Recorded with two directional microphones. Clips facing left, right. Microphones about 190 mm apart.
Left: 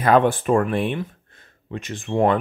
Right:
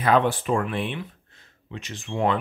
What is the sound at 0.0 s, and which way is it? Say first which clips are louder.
Speech: left 4 dB; 50° left (ahead or behind).